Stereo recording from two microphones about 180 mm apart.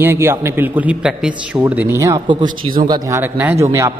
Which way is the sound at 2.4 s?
50° right (ahead or behind).